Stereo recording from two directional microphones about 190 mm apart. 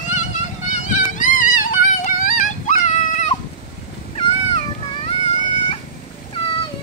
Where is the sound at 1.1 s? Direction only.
45° left (ahead or behind).